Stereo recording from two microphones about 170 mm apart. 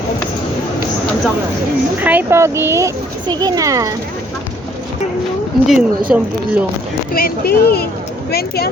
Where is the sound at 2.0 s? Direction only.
10° right (ahead or behind).